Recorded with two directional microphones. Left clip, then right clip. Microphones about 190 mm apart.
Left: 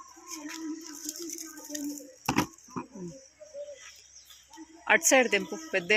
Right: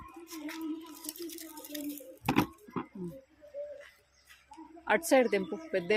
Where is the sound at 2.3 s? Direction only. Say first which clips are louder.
Left 1 dB; 5° right (ahead or behind).